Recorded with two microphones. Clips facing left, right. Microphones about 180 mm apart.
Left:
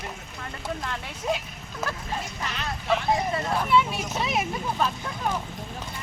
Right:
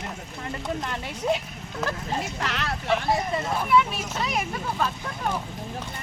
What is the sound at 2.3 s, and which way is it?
Speech, 75° right (ahead or behind).